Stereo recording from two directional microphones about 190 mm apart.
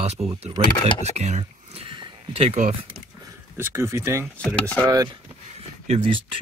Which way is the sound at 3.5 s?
15° right (ahead or behind).